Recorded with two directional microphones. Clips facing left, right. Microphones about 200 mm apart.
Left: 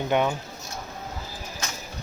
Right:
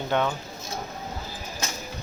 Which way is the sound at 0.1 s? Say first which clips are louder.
Left 2 dB; 15° left (ahead or behind).